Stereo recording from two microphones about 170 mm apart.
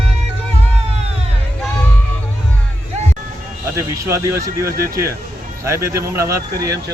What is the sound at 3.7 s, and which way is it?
Speech, 15° right (ahead or behind).